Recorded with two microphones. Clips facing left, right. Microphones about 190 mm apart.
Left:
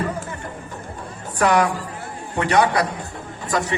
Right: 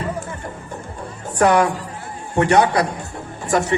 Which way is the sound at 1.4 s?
45° right (ahead or behind).